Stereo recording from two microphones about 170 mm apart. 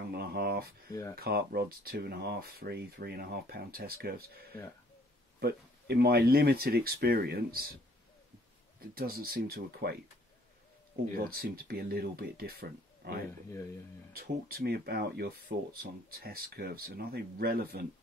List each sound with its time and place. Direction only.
0.1 s a sound: 65° right (ahead or behind)
1.1 s speech: 65° right (ahead or behind)
8.8 s speech: 60° right (ahead or behind)
11.1 s speech: 60° right (ahead or behind)
14.1 s speech: 65° right (ahead or behind)